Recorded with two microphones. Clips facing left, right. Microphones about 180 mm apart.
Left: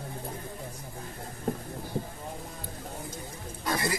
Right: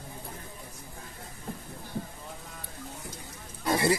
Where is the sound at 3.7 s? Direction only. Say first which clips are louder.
Right 5 dB; 25° right (ahead or behind).